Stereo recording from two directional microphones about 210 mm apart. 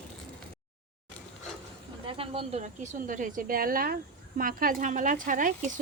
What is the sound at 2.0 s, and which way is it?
Speech, 25° right (ahead or behind).